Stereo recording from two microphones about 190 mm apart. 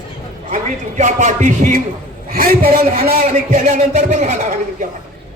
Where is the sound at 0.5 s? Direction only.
40° right (ahead or behind).